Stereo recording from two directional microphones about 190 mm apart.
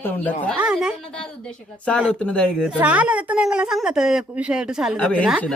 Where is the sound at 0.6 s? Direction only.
5° right (ahead or behind).